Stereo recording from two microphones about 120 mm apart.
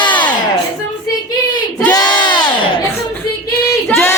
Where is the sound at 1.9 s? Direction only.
35° left (ahead or behind).